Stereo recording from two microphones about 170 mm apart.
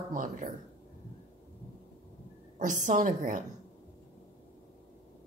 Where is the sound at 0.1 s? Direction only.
50° right (ahead or behind).